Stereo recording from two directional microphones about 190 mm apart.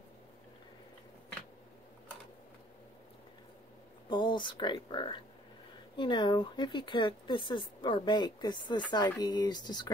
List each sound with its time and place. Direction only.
4.1 s speech: 25° left (ahead or behind)